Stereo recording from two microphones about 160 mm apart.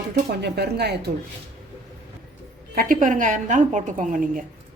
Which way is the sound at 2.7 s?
60° right (ahead or behind).